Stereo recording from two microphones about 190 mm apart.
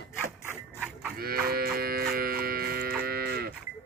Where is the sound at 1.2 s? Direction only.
50° right (ahead or behind).